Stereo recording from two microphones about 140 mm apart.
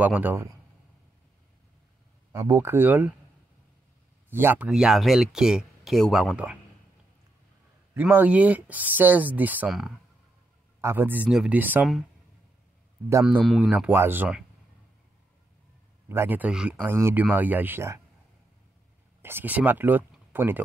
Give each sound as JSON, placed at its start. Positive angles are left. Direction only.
{"t": 0.0, "sound": "speech", "side_deg": -10}
{"t": 2.3, "sound": "speech", "side_deg": -25}
{"t": 4.3, "sound": "speech", "side_deg": -15}
{"t": 4.6, "sound": "speech", "side_deg": -5}
{"t": 6.3, "sound": "speech", "side_deg": -10}
{"t": 7.9, "sound": "speech", "side_deg": -15}
{"t": 10.8, "sound": "speech", "side_deg": -15}
{"t": 13.2, "sound": "speech", "side_deg": -5}
{"t": 16.1, "sound": "speech", "side_deg": -15}
{"t": 19.2, "sound": "speech", "side_deg": -15}